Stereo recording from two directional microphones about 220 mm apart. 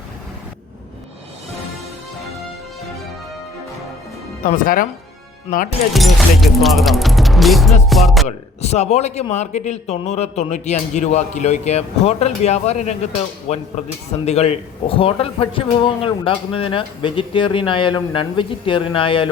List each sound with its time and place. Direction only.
4.4 s a man's voice: 40° left (ahead or behind)
5.9 s speech: centre (ahead or behind)
7.9 s music: centre (ahead or behind)
8.3 s a man's voice: 30° left (ahead or behind)